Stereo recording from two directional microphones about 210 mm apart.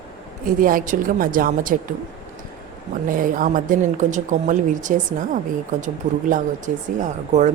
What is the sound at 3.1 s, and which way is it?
A woman's voice, 40° right (ahead or behind).